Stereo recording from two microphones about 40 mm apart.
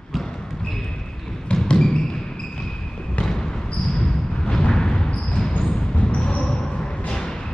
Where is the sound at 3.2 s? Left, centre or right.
Centre.